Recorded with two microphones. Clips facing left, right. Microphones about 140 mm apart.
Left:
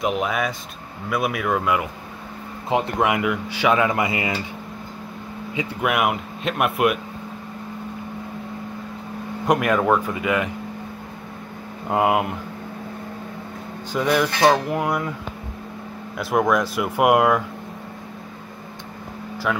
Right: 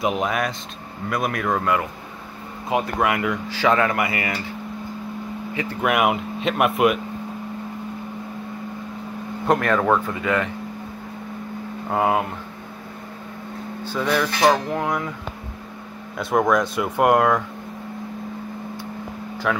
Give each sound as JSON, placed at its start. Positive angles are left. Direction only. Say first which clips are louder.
{"t": 0.0, "sound": "speech", "louder": "even", "side_deg": 0}
{"t": 2.7, "sound": "speech", "louder": "left 1 dB", "side_deg": 20}
{"t": 5.5, "sound": "speech", "louder": "left 1 dB", "side_deg": 15}
{"t": 5.9, "sound": "speech", "louder": "right 2 dB", "side_deg": 0}
{"t": 9.5, "sound": "speech", "louder": "even", "side_deg": 10}
{"t": 11.9, "sound": "speech", "louder": "left 1 dB", "side_deg": 15}
{"t": 13.9, "sound": "speech", "louder": "left 2 dB", "side_deg": 10}
{"t": 16.2, "sound": "speech", "louder": "right 1 dB", "side_deg": 5}
{"t": 19.5, "sound": "speech", "louder": "right 1 dB", "side_deg": 0}